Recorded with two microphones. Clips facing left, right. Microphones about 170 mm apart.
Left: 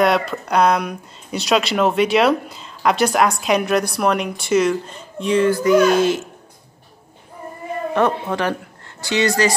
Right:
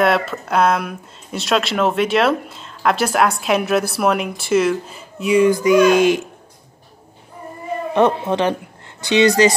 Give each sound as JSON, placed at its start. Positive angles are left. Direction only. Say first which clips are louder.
{"t": 0.0, "sound": "speech", "louder": "even", "side_deg": 0}
{"t": 7.9, "sound": "speech", "louder": "right 3 dB", "side_deg": -20}